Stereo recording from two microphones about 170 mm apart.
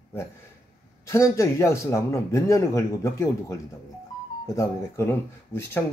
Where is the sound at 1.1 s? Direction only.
15° left (ahead or behind).